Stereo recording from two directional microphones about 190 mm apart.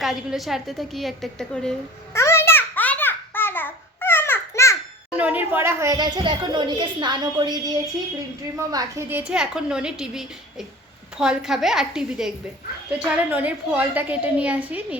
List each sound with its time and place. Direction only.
0.0 s a woman's voice: centre (ahead or behind)
2.1 s babbling: 15° left (ahead or behind)
5.1 s a woman's voice: 10° right (ahead or behind)